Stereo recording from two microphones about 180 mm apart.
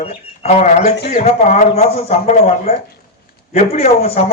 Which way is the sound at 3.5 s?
35° left (ahead or behind).